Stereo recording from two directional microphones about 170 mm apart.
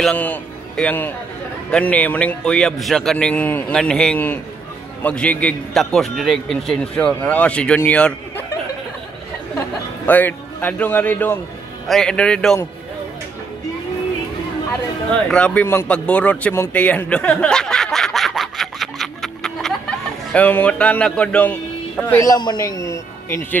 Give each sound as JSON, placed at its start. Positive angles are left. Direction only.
{"t": 0.0, "sound": "a man's voice", "side_deg": 10}
{"t": 10.0, "sound": "a man's voice", "side_deg": 10}
{"t": 15.2, "sound": "a sound", "side_deg": 5}
{"t": 20.3, "sound": "speech", "side_deg": 10}
{"t": 22.2, "sound": "a man's voice", "side_deg": 25}